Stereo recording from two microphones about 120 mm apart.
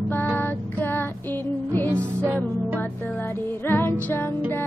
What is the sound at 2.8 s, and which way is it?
Music, 15° left (ahead or behind).